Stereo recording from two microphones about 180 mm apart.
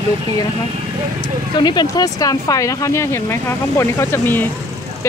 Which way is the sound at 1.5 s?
25° left (ahead or behind).